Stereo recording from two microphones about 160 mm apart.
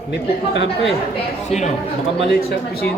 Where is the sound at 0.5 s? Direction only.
90° left.